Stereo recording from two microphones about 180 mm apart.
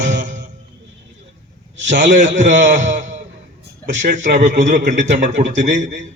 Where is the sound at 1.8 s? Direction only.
40° right (ahead or behind).